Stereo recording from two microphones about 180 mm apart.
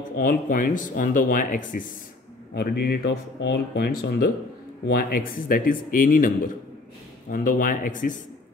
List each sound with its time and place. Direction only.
0.2 s speech: 50° left (ahead or behind)
2.5 s speech: 60° left (ahead or behind)